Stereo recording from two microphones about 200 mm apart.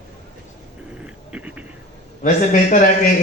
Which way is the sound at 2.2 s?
40° left (ahead or behind).